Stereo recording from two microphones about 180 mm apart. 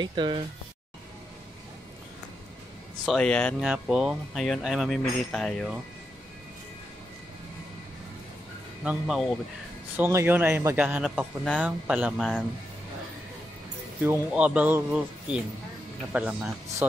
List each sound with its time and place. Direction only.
0.0 s speech: 25° right (ahead or behind)
3.1 s speech: 5° left (ahead or behind)
3.6 s speech: 5° right (ahead or behind)
8.8 s a man's voice: centre (ahead or behind)
12.2 s speech: centre (ahead or behind)
14.0 s a man's voice: 5° right (ahead or behind)